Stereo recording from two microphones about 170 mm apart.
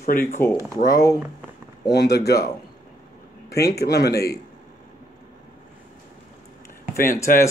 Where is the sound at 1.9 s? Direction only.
70° left (ahead or behind).